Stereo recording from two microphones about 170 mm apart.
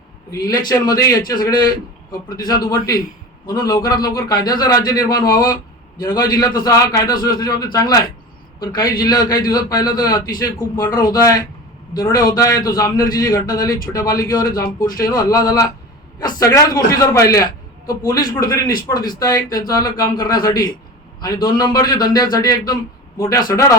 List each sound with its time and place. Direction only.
0.7 s a man's voice: 20° left (ahead or behind)